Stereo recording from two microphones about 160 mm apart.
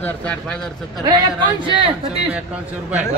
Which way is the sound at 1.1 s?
30° right (ahead or behind).